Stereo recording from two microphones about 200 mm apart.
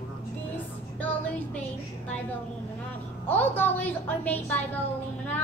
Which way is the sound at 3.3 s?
10° left (ahead or behind).